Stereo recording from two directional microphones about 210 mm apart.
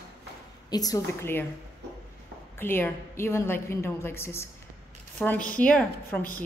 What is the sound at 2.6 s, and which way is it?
A woman's voice, 10° left (ahead or behind).